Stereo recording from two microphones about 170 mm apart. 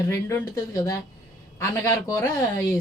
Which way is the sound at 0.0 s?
20° left (ahead or behind).